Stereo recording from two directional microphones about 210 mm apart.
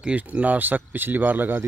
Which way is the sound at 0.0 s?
5° right (ahead or behind).